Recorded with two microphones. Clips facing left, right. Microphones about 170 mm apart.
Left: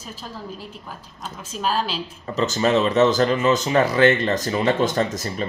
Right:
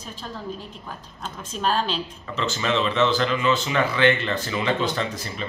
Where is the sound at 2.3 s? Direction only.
40° left (ahead or behind).